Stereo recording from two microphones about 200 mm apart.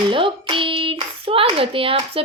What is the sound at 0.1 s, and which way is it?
A child's voice, 25° right (ahead or behind).